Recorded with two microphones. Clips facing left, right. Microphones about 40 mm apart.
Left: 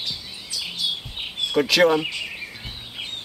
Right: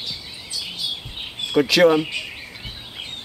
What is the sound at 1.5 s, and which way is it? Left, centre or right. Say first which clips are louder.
Speech: right 3 dB; centre.